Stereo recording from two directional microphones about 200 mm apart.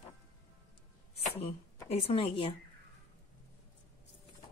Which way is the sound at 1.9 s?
30° left (ahead or behind).